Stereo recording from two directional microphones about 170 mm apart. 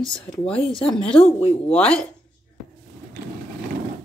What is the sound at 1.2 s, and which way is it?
Speech, 35° left (ahead or behind).